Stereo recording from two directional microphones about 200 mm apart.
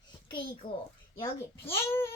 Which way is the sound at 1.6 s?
10° left (ahead or behind).